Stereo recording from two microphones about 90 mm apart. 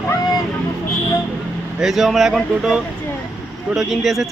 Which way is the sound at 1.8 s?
Centre (ahead or behind).